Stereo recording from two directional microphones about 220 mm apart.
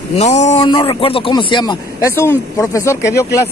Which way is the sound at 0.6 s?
20° left (ahead or behind).